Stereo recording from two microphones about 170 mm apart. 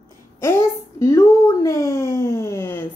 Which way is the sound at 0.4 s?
15° left (ahead or behind).